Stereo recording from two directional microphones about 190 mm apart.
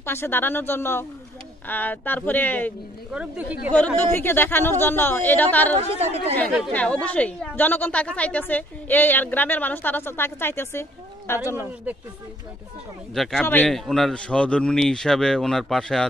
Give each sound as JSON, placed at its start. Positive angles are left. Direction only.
{"t": 0.0, "sound": "a woman's voice", "side_deg": 10}
{"t": 3.1, "sound": "a woman's voice", "side_deg": -5}
{"t": 3.7, "sound": "a woman's voice", "side_deg": 10}
{"t": 5.8, "sound": "speech", "side_deg": -35}
{"t": 6.3, "sound": "a woman's voice", "side_deg": 5}
{"t": 11.5, "sound": "a woman's voice", "side_deg": -10}
{"t": 13.1, "sound": "a man's voice", "side_deg": 0}